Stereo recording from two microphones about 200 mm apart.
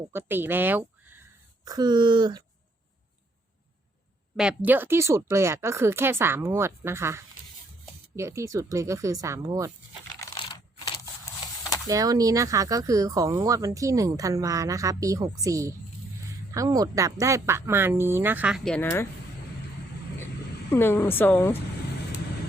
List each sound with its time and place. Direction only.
0.1 s speech: 10° right (ahead or behind)
4.4 s speech: 5° right (ahead or behind)
10.2 s a sound: 20° left (ahead or behind)
11.9 s speech: 20° right (ahead or behind); by 19.0 s 10° left (ahead or behind)
20.7 s speech: 10° left (ahead or behind)